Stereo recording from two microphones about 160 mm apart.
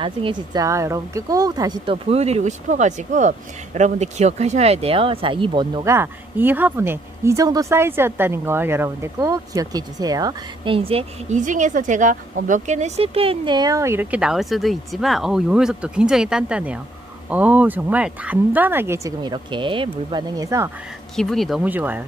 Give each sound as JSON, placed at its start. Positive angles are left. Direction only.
{"t": 0.0, "sound": "speech", "side_deg": -30}
{"t": 2.0, "sound": "speech", "side_deg": -40}
{"t": 5.9, "sound": "speech", "side_deg": -15}
{"t": 21.2, "sound": "speech", "side_deg": 0}
{"t": 21.6, "sound": "speech", "side_deg": -10}